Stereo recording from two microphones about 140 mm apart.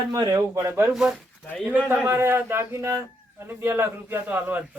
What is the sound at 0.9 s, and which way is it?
A man's voice, 5° right (ahead or behind).